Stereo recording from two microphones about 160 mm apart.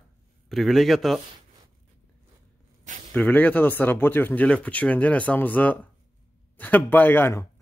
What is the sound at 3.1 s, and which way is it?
Speech, 10° left (ahead or behind).